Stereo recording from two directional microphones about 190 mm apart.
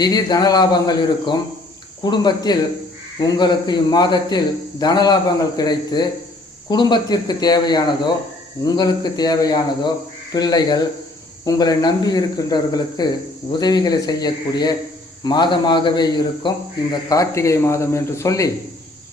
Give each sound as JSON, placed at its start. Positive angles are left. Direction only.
{"t": 0.0, "sound": "speech", "side_deg": 20}